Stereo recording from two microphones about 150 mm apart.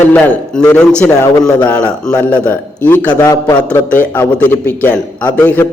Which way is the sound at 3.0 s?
25° left (ahead or behind).